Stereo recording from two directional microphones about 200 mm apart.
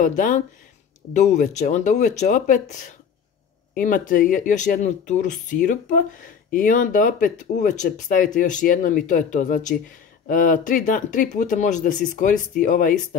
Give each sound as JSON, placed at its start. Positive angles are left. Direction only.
{"t": 0.0, "sound": "speech", "side_deg": 40}